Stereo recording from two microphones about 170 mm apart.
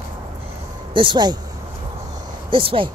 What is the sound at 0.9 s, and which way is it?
Speech, 30° right (ahead or behind).